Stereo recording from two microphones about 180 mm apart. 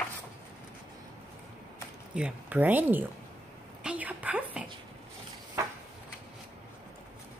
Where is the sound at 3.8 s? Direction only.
5° right (ahead or behind).